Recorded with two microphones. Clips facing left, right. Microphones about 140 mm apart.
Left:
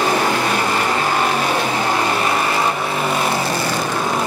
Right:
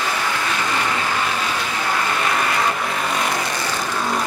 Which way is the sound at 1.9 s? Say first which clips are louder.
Even; 30° left (ahead or behind).